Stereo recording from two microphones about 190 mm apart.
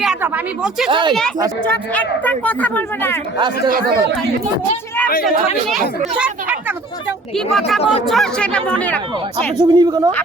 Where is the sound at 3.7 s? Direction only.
50° right (ahead or behind).